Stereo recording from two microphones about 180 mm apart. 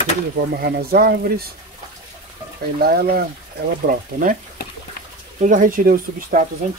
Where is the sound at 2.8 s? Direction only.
60° right (ahead or behind).